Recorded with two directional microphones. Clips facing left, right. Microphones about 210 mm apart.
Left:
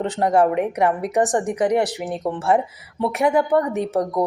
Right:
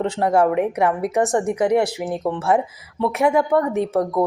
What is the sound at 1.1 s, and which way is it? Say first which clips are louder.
Speech: right 1 dB; 35° left (ahead or behind).